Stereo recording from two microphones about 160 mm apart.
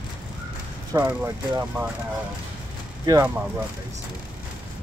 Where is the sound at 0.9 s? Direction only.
15° right (ahead or behind).